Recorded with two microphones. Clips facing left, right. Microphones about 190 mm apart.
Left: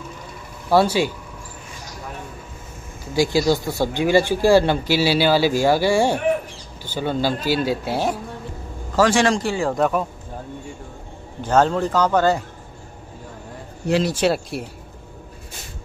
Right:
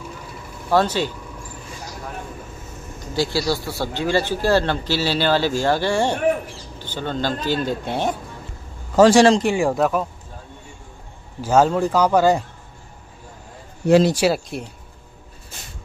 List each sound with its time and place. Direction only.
0.7 s speech: 10° left (ahead or behind)
3.0 s speech: 10° left (ahead or behind)
9.0 s a man's voice: 20° right (ahead or behind)
9.8 s speech: centre (ahead or behind)
11.4 s speech: 5° right (ahead or behind)
14.1 s speech: centre (ahead or behind)